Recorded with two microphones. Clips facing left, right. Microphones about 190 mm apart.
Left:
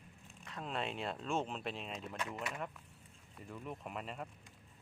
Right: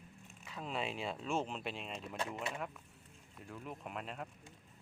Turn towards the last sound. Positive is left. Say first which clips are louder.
# even
turn(degrees=0)  # may be behind; listen again after turning